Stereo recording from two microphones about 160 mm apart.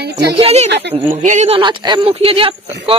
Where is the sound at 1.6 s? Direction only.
30° right (ahead or behind).